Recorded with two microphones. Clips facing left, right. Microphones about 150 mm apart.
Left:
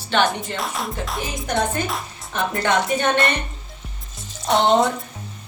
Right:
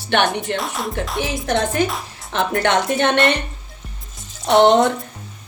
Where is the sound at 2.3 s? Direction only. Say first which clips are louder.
Right 3 dB; 70° right (ahead or behind).